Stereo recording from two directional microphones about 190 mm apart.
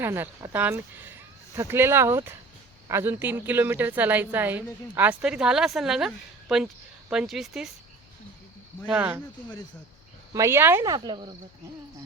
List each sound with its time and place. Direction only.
0.0 s a woman's voice: 10° right (ahead or behind)
8.9 s a woman's voice: 5° right (ahead or behind)
10.3 s speech: 15° right (ahead or behind)